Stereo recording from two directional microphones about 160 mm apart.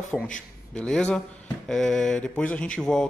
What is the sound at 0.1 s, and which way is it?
A man's voice, 5° left (ahead or behind).